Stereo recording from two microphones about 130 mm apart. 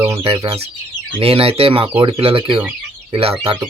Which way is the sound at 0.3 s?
50° right (ahead or behind).